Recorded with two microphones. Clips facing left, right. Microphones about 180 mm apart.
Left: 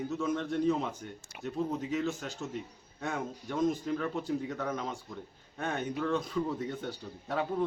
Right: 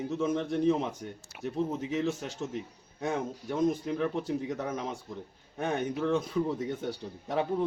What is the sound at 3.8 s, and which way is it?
A man's voice, 15° right (ahead or behind).